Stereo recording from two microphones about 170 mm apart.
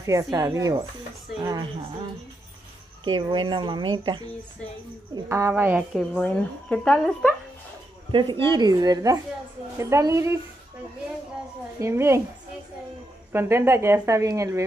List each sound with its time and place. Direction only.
0.0 s speech: 20° right (ahead or behind)
3.0 s speech: 25° right (ahead or behind)
5.1 s a woman's voice: 15° right (ahead or behind)
5.9 s a woman's voice: 5° left (ahead or behind)
8.1 s a woman's voice: 30° right (ahead or behind)
11.8 s a woman's voice: 15° right (ahead or behind)
13.3 s a woman's voice: 15° right (ahead or behind)